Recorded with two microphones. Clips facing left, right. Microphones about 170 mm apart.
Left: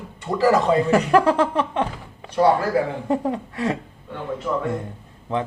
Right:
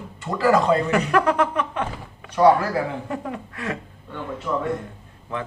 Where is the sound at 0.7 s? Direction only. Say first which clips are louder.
Left 3 dB; 30° left (ahead or behind).